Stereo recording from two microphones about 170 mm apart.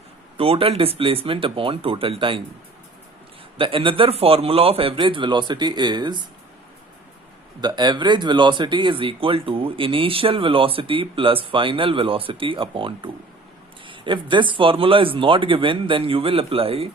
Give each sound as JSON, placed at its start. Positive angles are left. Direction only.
{"t": 0.3, "sound": "speech", "side_deg": -35}
{"t": 3.6, "sound": "speech", "side_deg": -30}
{"t": 7.6, "sound": "speech", "side_deg": -25}